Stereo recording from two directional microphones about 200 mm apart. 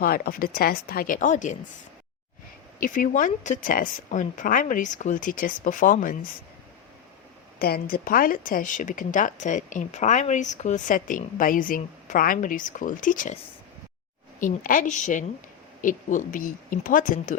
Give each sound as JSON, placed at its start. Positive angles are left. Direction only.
{"t": 0.0, "sound": "speech", "side_deg": 45}
{"t": 2.8, "sound": "speech", "side_deg": 40}
{"t": 7.6, "sound": "speech", "side_deg": 50}